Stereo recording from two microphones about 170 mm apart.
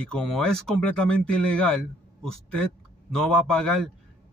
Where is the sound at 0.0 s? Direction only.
5° left (ahead or behind).